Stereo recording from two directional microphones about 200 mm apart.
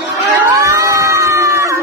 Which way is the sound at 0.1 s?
15° right (ahead or behind).